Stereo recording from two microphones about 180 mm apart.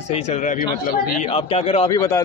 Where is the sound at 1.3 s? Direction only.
35° left (ahead or behind).